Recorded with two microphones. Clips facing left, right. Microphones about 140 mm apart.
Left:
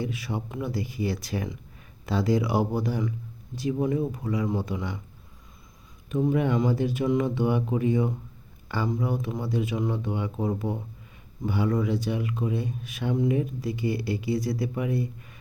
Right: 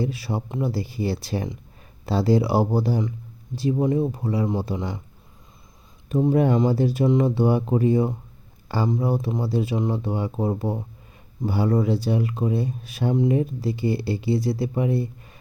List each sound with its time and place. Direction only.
0.0 s speech: 35° right (ahead or behind)
6.1 s speech: 35° right (ahead or behind)